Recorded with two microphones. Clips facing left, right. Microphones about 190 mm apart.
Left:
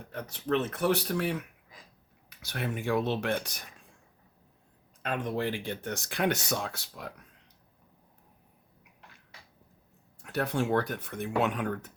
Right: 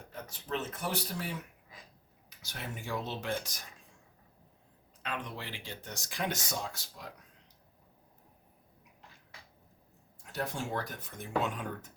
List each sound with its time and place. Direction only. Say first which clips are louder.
0.1 s speech: left 8 dB; 65° left (ahead or behind)
5.0 s speech: left 9 dB; 45° left (ahead or behind); by 7.1 s 65° left (ahead or behind)
10.2 s speech: left 8 dB; 65° left (ahead or behind)